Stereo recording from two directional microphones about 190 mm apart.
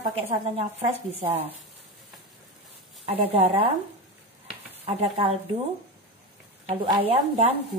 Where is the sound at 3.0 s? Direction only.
30° right (ahead or behind).